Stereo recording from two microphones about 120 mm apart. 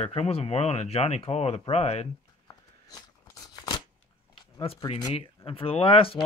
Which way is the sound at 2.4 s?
30° left (ahead or behind).